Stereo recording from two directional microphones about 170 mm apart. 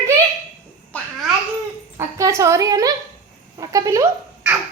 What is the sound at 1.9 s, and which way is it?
A woman's voice, 15° right (ahead or behind).